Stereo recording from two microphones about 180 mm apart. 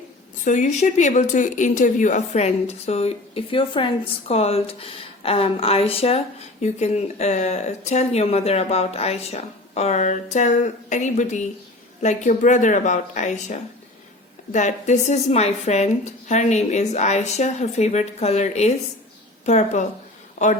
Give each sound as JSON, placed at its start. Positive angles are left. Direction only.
{"t": 0.4, "sound": "speech", "side_deg": 45}